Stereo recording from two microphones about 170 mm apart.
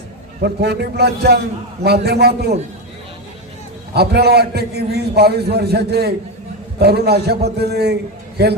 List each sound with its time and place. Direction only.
0.4 s a man's voice: 75° right (ahead or behind)
3.9 s a man's voice: 70° right (ahead or behind)